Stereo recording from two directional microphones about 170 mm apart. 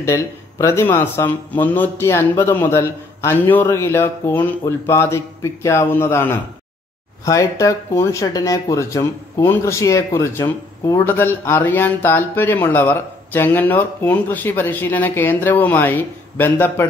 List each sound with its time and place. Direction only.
0.0 s speech: 15° left (ahead or behind)